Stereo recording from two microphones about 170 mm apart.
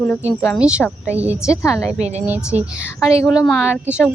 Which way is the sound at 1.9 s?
40° right (ahead or behind).